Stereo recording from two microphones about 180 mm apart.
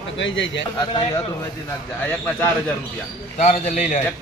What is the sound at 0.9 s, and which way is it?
Speech, 20° left (ahead or behind).